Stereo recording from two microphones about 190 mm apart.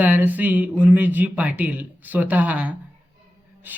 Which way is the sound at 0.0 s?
10° right (ahead or behind).